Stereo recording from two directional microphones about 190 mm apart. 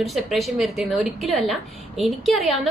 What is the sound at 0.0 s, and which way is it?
A woman's voice, centre (ahead or behind).